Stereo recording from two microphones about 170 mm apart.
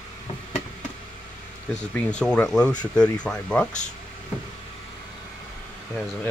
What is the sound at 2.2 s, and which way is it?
Speech, 5° left (ahead or behind).